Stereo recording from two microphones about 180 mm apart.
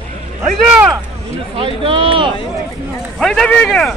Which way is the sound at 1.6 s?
30° right (ahead or behind).